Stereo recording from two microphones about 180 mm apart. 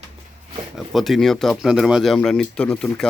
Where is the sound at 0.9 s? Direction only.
Centre (ahead or behind).